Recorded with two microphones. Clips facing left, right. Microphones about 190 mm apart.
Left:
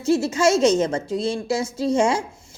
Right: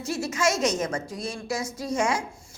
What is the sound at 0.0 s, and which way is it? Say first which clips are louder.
A woman's voice: left 8 dB; 25° left (ahead or behind).